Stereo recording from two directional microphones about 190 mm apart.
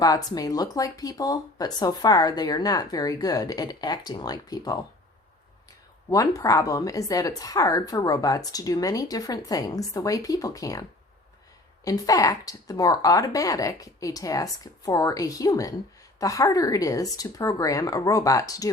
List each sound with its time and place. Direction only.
0.0 s a woman's voice: 20° left (ahead or behind)
6.1 s a woman's voice: 20° left (ahead or behind)
11.9 s a woman's voice: 20° left (ahead or behind)